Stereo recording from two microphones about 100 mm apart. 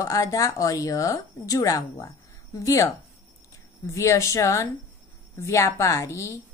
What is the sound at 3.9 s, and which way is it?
Speech, 30° left (ahead or behind).